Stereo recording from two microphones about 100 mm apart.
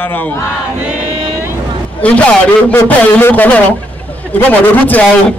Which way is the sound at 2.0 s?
15° left (ahead or behind).